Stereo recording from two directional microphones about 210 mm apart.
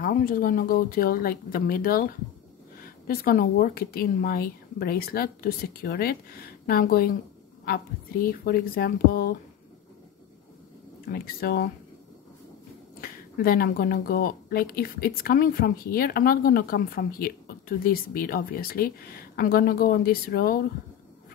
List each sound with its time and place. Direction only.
0.0 s speech: 40° left (ahead or behind)
11.1 s speech: 50° left (ahead or behind)
13.0 s speech: 45° left (ahead or behind)